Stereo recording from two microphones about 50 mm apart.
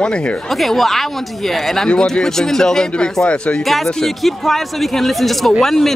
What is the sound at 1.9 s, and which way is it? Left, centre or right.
Speech, centre.